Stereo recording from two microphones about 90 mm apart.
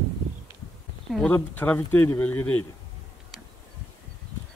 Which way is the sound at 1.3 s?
20° left (ahead or behind).